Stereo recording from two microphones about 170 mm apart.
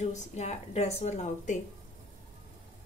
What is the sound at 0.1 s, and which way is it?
A woman's voice, 40° left (ahead or behind).